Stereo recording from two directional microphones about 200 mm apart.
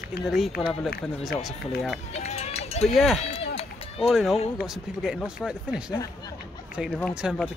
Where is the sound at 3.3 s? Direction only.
30° left (ahead or behind).